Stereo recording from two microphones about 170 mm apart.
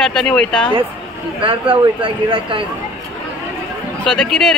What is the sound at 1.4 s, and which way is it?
Speech, 30° right (ahead or behind).